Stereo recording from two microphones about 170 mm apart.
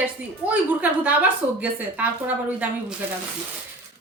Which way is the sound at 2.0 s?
10° right (ahead or behind).